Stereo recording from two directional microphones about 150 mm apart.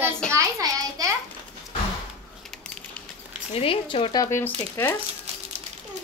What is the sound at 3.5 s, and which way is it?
Speech, 35° left (ahead or behind).